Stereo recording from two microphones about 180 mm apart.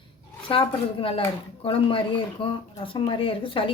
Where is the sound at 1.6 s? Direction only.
30° left (ahead or behind).